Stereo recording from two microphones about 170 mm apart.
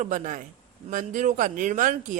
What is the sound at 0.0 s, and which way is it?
Speech, 50° right (ahead or behind).